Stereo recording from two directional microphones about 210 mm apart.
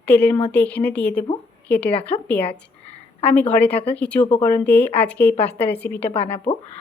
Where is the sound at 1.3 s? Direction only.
20° left (ahead or behind).